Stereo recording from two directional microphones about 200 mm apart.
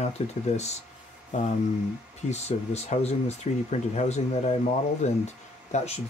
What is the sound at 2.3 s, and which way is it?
Speech, 35° left (ahead or behind).